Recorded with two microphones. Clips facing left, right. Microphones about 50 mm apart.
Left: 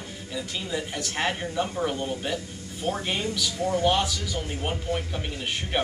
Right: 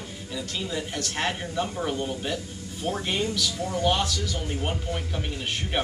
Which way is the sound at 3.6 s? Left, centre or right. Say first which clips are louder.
Left 7 dB; left.